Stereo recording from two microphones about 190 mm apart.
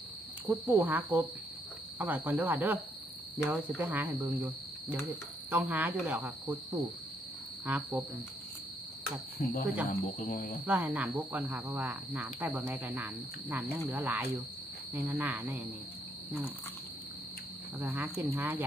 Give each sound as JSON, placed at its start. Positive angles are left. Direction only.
{"t": 0.5, "sound": "speech", "side_deg": -10}
{"t": 7.6, "sound": "speech", "side_deg": -10}
{"t": 9.4, "sound": "speech", "side_deg": 45}
{"t": 10.6, "sound": "speech", "side_deg": -10}
{"t": 17.7, "sound": "speech", "side_deg": -10}